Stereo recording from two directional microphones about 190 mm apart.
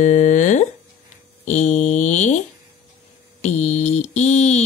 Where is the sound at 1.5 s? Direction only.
40° left (ahead or behind).